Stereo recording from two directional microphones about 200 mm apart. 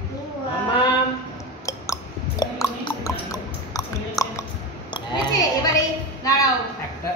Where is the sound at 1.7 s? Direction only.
20° left (ahead or behind).